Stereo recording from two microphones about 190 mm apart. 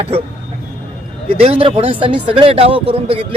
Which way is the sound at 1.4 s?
30° right (ahead or behind).